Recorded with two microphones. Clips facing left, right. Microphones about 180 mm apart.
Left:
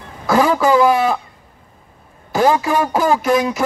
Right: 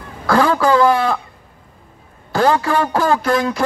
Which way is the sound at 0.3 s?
10° left (ahead or behind).